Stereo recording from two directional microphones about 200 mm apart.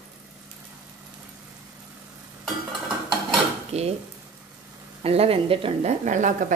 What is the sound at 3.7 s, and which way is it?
Stir, 30° right (ahead or behind).